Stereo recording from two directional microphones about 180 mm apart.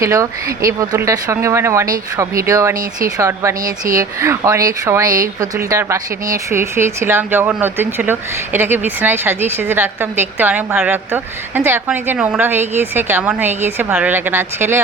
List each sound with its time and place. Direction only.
0.0 s a woman's voice: 15° right (ahead or behind)